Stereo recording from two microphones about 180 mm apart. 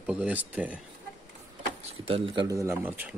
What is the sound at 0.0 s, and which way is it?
Speech, 5° right (ahead or behind).